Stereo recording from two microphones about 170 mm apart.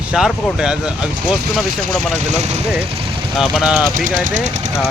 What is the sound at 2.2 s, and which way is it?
Speech, 40° right (ahead or behind).